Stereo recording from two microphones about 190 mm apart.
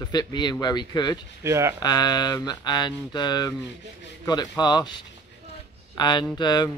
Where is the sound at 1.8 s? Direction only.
20° left (ahead or behind).